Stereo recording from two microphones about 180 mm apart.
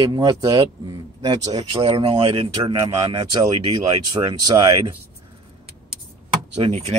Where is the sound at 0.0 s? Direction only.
20° right (ahead or behind).